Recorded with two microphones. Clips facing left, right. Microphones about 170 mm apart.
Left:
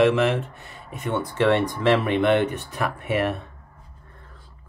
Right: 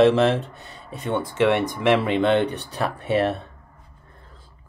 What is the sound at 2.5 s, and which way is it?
Speech, 35° right (ahead or behind).